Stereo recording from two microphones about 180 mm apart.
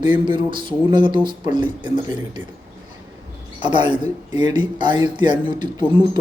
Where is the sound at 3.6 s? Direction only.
25° right (ahead or behind).